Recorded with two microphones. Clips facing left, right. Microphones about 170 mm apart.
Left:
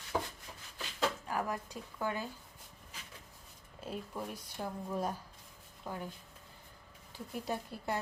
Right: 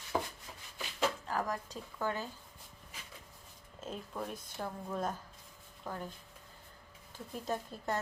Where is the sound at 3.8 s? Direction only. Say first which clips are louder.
Even; 10° left (ahead or behind).